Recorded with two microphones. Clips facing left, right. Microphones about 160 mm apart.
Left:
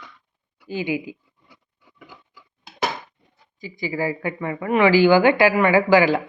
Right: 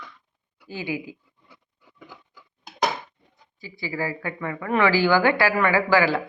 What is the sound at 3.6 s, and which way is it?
A woman's voice, 20° left (ahead or behind).